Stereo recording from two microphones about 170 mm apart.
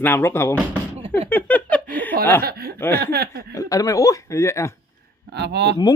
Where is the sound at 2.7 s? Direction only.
15° left (ahead or behind).